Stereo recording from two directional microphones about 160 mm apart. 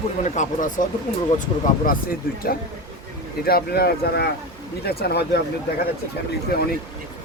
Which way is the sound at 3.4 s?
75° left (ahead or behind).